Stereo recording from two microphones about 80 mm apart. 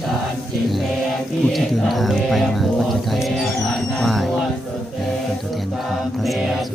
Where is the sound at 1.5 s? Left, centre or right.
Centre.